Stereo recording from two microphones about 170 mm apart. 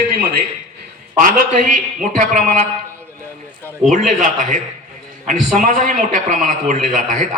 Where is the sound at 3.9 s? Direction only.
50° right (ahead or behind).